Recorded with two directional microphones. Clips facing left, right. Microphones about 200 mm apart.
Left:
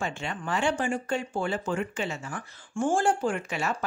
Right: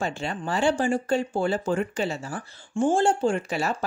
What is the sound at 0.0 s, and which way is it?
Speech, 35° right (ahead or behind).